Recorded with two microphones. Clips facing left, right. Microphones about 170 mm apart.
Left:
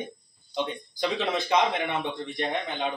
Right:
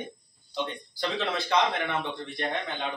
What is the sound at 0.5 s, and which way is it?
A man's voice, 15° left (ahead or behind).